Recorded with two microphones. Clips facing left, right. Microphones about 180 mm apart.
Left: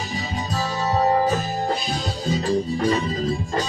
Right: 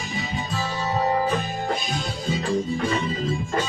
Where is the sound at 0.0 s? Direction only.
35° left (ahead or behind).